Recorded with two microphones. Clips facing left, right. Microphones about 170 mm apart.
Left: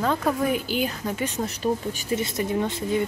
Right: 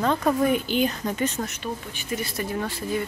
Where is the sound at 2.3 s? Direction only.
20° left (ahead or behind).